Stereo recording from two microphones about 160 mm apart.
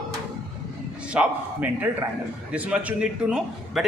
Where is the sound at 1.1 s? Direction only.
10° right (ahead or behind).